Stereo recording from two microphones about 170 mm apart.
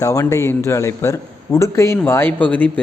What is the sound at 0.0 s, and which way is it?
A man's voice, 20° left (ahead or behind).